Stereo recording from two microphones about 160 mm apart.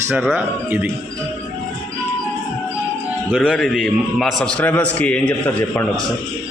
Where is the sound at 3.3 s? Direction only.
Centre (ahead or behind).